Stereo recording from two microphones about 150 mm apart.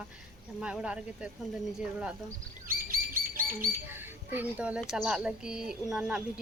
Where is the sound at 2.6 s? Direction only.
70° right (ahead or behind).